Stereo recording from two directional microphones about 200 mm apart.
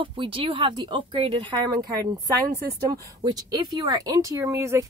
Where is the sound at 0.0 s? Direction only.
25° right (ahead or behind).